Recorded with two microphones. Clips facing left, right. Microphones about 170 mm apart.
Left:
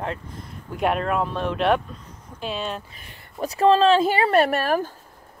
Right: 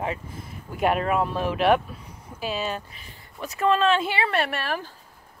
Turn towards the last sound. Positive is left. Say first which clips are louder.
# left 7 dB
turn(degrees=45)  # may be behind; listen again after turning